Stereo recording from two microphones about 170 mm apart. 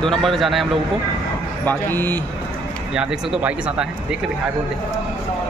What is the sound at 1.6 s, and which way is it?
Speech, 10° left (ahead or behind).